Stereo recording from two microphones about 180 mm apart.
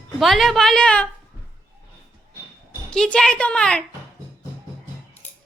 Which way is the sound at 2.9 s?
5° left (ahead or behind).